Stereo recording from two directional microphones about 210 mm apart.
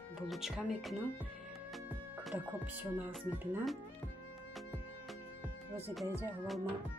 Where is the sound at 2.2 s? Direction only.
Centre (ahead or behind).